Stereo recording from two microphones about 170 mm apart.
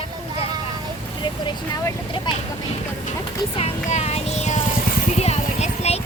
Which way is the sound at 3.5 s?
40° left (ahead or behind).